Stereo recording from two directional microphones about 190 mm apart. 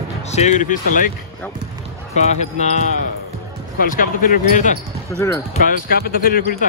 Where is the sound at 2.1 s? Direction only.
35° left (ahead or behind).